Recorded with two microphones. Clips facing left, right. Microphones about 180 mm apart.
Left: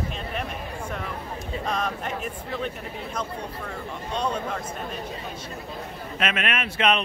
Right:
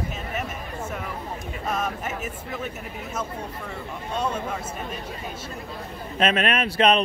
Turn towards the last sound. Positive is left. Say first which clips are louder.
# right 4 dB
turn(degrees=-35)  # may be behind; listen again after turning